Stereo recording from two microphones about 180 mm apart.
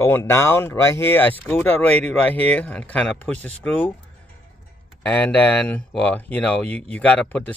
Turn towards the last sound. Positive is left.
turn(degrees=5)  # may be behind; listen again after turning